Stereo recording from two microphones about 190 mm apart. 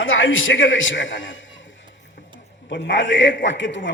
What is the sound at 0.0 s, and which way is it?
A man's voice, 90° left.